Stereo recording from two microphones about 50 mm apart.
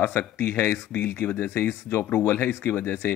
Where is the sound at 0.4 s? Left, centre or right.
Left.